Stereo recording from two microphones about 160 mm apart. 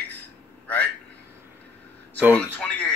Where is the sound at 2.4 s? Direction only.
10° left (ahead or behind).